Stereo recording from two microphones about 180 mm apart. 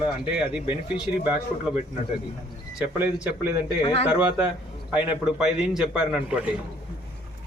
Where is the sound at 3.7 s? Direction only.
25° left (ahead or behind).